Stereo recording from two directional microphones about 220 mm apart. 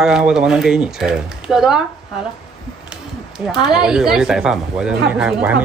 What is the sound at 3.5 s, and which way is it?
Speech, 5° right (ahead or behind).